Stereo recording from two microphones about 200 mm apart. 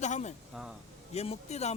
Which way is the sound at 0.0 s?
35° left (ahead or behind).